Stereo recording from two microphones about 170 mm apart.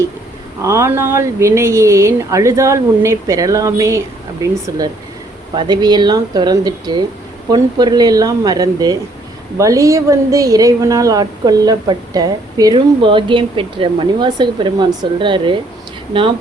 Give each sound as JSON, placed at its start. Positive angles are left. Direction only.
{"t": 0.6, "sound": "speech", "side_deg": -15}